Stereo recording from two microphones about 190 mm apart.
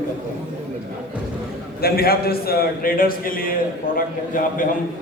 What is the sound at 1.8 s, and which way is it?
A man's voice, 55° left (ahead or behind).